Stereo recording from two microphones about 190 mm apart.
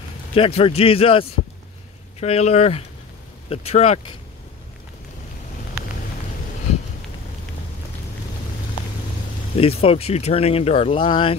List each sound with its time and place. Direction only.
0.3 s a man's voice: 30° left (ahead or behind)
9.6 s speech: 30° left (ahead or behind)